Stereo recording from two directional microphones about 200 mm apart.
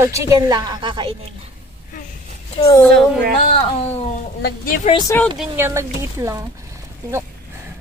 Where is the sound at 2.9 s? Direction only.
50° right (ahead or behind).